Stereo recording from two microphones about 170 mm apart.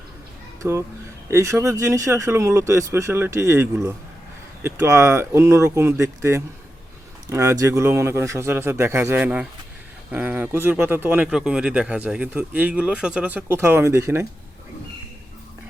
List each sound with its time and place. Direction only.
0.6 s speech: 15° right (ahead or behind)